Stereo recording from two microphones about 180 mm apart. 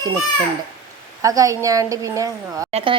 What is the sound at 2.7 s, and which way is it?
Speech, 30° right (ahead or behind).